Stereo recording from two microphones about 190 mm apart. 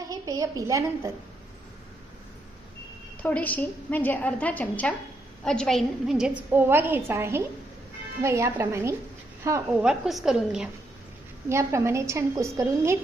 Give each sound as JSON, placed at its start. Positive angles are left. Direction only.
{"t": 0.1, "sound": "a woman's voice", "side_deg": -20}
{"t": 3.2, "sound": "a woman's voice", "side_deg": 10}
{"t": 9.8, "sound": "a woman's voice", "side_deg": 0}
{"t": 11.4, "sound": "a woman's voice", "side_deg": -15}